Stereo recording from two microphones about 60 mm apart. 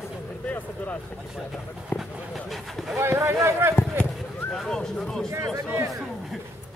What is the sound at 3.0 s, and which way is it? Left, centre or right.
Speech, right.